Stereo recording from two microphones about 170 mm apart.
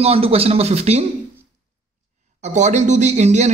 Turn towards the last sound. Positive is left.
turn(degrees=-40)  # may be behind; listen again after turning